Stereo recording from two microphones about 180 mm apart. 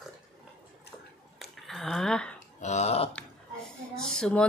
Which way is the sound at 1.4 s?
Centre (ahead or behind).